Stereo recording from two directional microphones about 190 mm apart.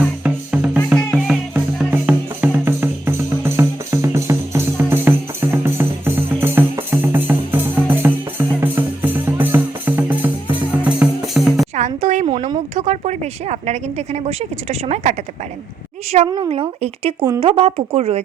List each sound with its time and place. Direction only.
0.2 s music: 5° right (ahead or behind)
11.7 s music: 35° right (ahead or behind)
12.7 s speech: 35° right (ahead or behind)
16.1 s a woman's voice: 25° right (ahead or behind)